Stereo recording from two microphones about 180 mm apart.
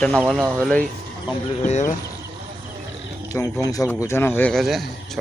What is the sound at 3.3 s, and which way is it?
Speech, 20° left (ahead or behind).